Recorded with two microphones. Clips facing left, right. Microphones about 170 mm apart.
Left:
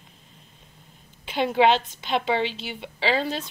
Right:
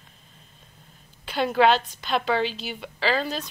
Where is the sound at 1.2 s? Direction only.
20° left (ahead or behind).